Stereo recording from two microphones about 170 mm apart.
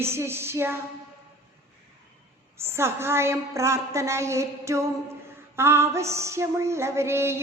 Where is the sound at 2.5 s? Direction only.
15° right (ahead or behind).